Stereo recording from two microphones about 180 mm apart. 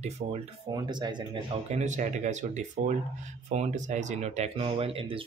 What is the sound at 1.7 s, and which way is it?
Speech, 45° right (ahead or behind).